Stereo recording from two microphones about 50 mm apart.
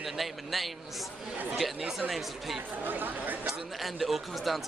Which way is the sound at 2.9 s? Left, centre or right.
Right.